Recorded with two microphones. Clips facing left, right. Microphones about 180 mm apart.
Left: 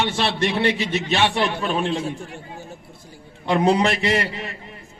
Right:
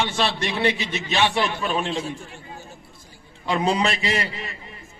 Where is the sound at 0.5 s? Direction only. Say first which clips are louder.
Left 2 dB; 60° left (ahead or behind).